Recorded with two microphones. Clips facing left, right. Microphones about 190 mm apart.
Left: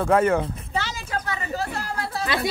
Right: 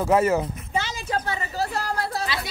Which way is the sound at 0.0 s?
5° right (ahead or behind).